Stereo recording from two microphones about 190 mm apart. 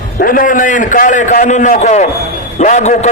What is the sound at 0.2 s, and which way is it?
A man's voice, 45° left (ahead or behind).